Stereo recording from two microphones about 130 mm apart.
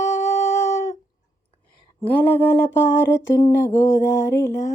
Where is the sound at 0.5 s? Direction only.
20° left (ahead or behind).